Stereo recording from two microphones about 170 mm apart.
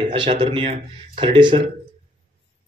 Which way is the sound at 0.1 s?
30° right (ahead or behind).